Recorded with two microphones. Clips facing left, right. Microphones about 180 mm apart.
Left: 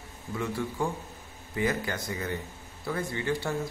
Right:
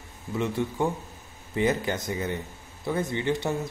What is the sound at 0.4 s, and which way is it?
A man's voice, 20° right (ahead or behind).